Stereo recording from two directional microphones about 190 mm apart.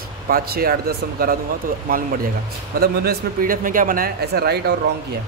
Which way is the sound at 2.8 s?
55° right (ahead or behind).